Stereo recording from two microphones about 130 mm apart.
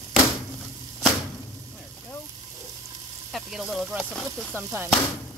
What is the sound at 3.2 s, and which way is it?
Speech, centre (ahead or behind).